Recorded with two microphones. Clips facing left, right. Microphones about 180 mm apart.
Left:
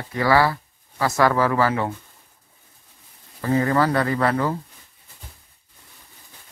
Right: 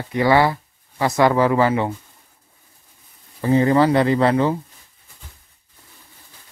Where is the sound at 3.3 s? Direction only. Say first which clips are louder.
Right 4 dB; 25° right (ahead or behind).